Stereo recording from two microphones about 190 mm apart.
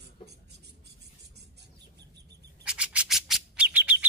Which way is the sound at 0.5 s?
60° right (ahead or behind).